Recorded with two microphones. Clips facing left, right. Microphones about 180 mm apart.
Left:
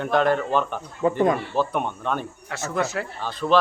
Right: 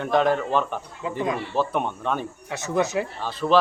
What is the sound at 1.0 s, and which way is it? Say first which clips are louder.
Speech: left 10 dB; 55° left (ahead or behind).